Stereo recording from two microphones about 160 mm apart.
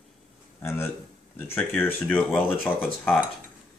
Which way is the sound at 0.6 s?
15° left (ahead or behind).